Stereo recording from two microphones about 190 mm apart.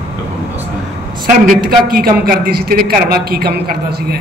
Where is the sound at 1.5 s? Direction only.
50° right (ahead or behind).